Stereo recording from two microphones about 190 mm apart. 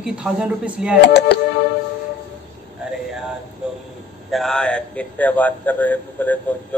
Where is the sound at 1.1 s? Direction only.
60° left (ahead or behind).